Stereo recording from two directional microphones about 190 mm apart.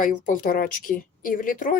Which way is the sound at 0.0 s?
45° left (ahead or behind).